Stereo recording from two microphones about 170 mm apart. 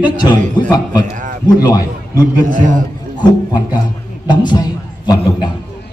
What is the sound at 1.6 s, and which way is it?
Speech, 20° left (ahead or behind).